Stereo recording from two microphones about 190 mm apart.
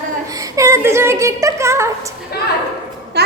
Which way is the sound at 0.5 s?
15° right (ahead or behind).